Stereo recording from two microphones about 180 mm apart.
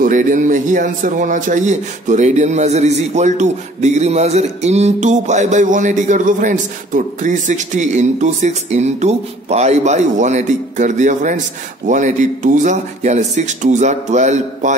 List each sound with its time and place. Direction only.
0.0 s a man's voice: 45° right (ahead or behind)